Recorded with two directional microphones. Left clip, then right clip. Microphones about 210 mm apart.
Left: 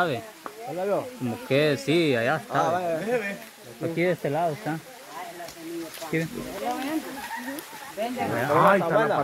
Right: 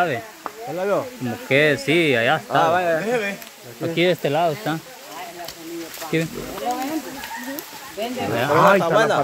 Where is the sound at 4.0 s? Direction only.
15° right (ahead or behind).